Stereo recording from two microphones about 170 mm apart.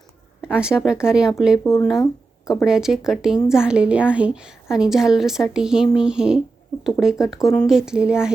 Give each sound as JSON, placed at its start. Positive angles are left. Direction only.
{"t": 0.5, "sound": "a woman's voice", "side_deg": -5}